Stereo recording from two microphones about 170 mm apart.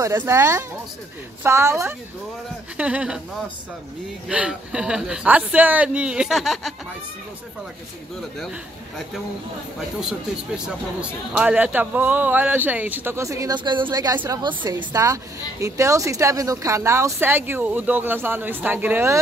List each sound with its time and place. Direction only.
0.0 s speech: 15° right (ahead or behind)
4.3 s speech: 5° right (ahead or behind)
9.8 s a woman's voice: 5° right (ahead or behind)